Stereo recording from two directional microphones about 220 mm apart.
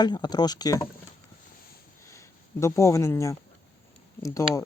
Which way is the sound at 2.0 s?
15° left (ahead or behind).